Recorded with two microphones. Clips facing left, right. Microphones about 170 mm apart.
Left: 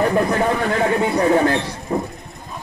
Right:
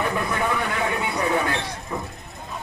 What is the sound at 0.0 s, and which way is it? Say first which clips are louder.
Speech: left 7 dB; 40° left (ahead or behind).